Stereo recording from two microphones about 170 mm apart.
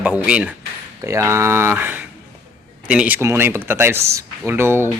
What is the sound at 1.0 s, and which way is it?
A man's voice, 15° right (ahead or behind).